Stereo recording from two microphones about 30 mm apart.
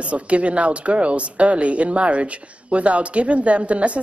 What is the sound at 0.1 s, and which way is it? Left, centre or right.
A woman's voice, right.